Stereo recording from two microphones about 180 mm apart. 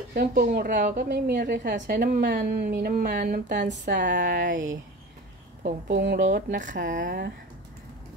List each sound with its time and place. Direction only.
0.1 s a woman's voice: 55° right (ahead or behind)
5.9 s speech: 75° right (ahead or behind)
6.1 s speech: 45° right (ahead or behind)